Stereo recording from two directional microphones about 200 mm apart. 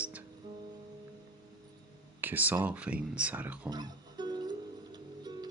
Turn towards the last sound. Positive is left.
turn(degrees=-20)  # may be behind; listen again after turning